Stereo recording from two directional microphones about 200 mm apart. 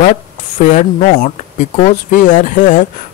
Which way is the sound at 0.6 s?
40° left (ahead or behind).